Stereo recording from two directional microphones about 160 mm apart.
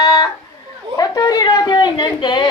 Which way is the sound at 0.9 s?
20° left (ahead or behind).